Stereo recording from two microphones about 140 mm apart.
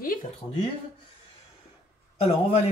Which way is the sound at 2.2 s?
50° left (ahead or behind).